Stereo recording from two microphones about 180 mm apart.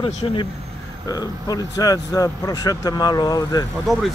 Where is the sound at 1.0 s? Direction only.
20° left (ahead or behind).